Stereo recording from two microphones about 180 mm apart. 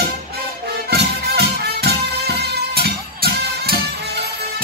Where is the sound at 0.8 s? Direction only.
65° right (ahead or behind).